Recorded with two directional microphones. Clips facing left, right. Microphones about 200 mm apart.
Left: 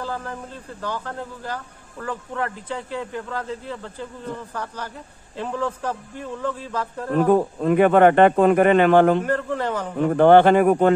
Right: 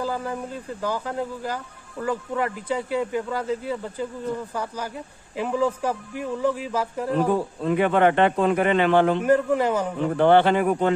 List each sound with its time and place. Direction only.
0.0 s a sound: 10° right (ahead or behind)
0.8 s speech: 10° right (ahead or behind)
5.3 s speech: 10° right (ahead or behind)
7.2 s a man's voice: 50° left (ahead or behind)
9.2 s speech: 10° right (ahead or behind)
10.0 s a man's voice: 45° left (ahead or behind)